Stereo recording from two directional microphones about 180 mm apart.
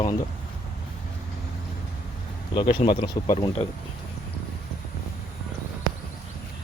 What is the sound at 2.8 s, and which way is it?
Speech, 20° left (ahead or behind).